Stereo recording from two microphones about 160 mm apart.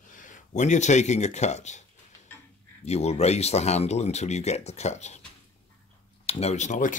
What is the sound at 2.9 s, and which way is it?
Speech, 40° left (ahead or behind).